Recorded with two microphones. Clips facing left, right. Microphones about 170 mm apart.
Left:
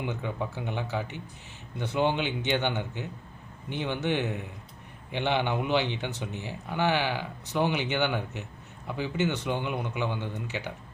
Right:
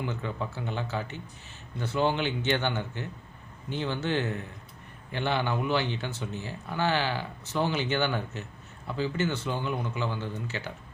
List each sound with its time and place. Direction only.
0.0 s speech: 15° left (ahead or behind)